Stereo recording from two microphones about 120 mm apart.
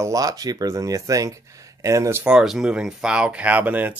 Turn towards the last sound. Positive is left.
turn(degrees=-15)  # may be behind; listen again after turning